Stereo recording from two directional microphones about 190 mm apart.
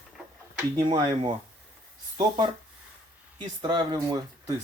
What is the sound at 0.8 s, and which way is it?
Speech, 25° right (ahead or behind).